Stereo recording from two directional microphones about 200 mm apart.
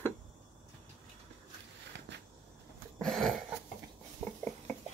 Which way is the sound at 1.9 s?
60° right (ahead or behind).